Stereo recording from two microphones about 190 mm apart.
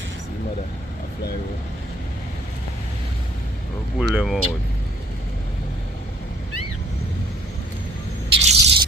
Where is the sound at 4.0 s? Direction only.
5° right (ahead or behind).